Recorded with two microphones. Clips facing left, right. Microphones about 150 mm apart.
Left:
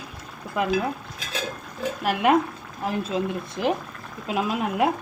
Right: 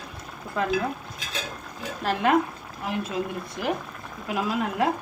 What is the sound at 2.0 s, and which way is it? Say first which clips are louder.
Speech: left 1 dB; 15° left (ahead or behind).